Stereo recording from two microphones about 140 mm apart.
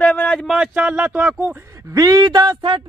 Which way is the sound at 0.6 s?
10° right (ahead or behind).